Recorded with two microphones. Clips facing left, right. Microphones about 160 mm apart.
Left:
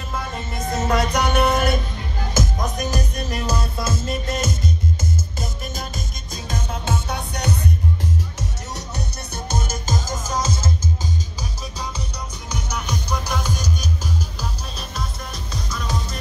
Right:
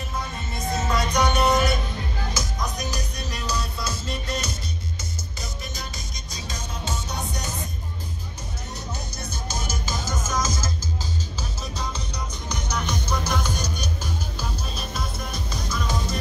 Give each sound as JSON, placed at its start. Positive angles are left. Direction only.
{"t": 0.8, "sound": "music", "side_deg": 55}
{"t": 6.3, "sound": "music", "side_deg": 55}
{"t": 8.7, "sound": "music", "side_deg": 65}
{"t": 12.4, "sound": "music", "side_deg": 10}
{"t": 15.7, "sound": "music", "side_deg": -5}